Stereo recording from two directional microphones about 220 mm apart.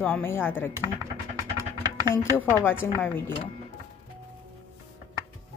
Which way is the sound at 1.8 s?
15° right (ahead or behind).